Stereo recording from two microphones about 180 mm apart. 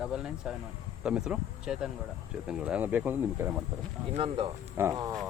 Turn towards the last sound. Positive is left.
turn(degrees=-20)  # may be behind; listen again after turning